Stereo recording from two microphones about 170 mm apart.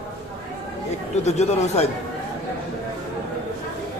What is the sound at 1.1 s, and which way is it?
Speech, 40° left (ahead or behind).